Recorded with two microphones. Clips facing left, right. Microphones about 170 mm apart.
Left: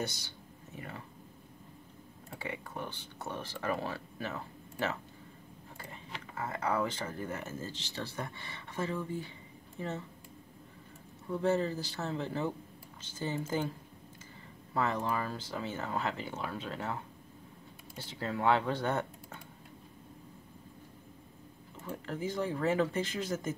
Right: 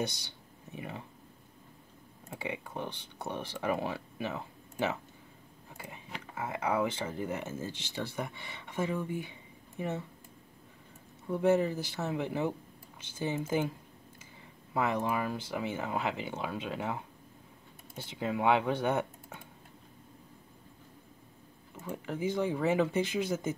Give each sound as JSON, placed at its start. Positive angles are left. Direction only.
{"t": 0.7, "sound": "speech", "side_deg": -15}
{"t": 2.2, "sound": "speech", "side_deg": -20}
{"t": 11.2, "sound": "speech", "side_deg": -15}
{"t": 14.7, "sound": "speech", "side_deg": -10}
{"t": 21.8, "sound": "speech", "side_deg": -10}